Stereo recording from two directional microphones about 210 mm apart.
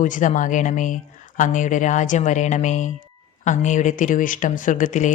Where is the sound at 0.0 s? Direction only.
40° left (ahead or behind).